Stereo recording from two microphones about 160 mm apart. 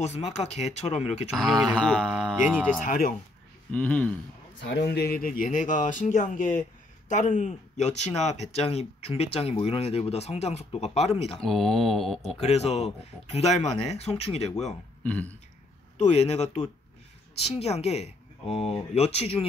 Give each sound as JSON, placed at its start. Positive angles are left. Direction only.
{"t": 0.0, "sound": "speech", "side_deg": 45}
{"t": 1.3, "sound": "speech", "side_deg": 0}
{"t": 2.4, "sound": "speech", "side_deg": -10}
{"t": 2.8, "sound": "speech", "side_deg": 60}
{"t": 3.7, "sound": "speech", "side_deg": 10}
{"t": 4.6, "sound": "speech", "side_deg": 90}
{"t": 11.4, "sound": "speech", "side_deg": 0}
{"t": 12.4, "sound": "speech", "side_deg": 40}
{"t": 15.0, "sound": "speech", "side_deg": 10}
{"t": 16.0, "sound": "speech", "side_deg": 45}